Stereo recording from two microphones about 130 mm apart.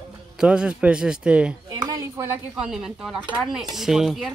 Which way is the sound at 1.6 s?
30° right (ahead or behind).